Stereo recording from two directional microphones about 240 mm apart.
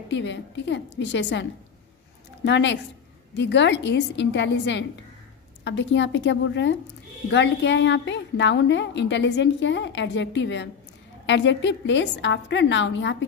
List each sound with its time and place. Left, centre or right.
0.1 s a woman's voice: left